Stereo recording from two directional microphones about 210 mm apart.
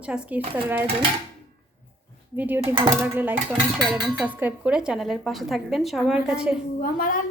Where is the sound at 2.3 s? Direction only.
10° right (ahead or behind).